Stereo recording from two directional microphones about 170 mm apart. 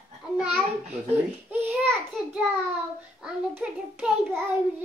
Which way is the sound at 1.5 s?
10° right (ahead or behind).